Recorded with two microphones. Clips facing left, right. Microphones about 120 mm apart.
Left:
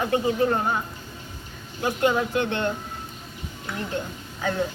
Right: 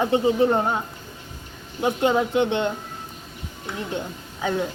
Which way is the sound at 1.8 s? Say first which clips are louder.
Right 2 dB; 20° right (ahead or behind).